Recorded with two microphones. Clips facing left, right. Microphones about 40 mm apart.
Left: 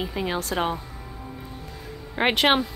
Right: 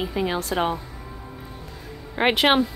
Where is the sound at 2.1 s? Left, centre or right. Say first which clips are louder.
Right 2 dB; centre.